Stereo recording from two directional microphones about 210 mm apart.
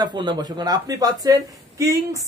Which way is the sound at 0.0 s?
20° right (ahead or behind).